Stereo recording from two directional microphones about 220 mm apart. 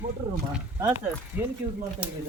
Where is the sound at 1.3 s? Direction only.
10° right (ahead or behind).